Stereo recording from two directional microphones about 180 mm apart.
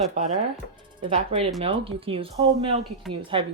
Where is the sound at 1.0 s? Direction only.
30° right (ahead or behind).